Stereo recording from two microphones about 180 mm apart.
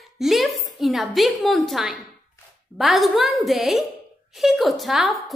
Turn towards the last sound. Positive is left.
turn(degrees=0)  # may be behind; listen again after turning